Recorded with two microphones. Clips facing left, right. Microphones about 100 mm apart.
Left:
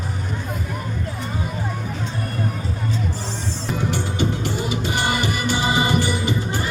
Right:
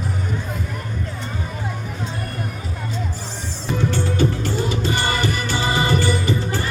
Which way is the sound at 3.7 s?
15° left (ahead or behind).